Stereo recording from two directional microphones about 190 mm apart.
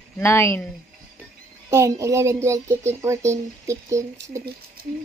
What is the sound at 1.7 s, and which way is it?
Speech, 15° right (ahead or behind).